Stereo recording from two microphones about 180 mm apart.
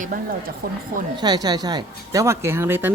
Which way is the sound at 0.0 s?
50° right (ahead or behind).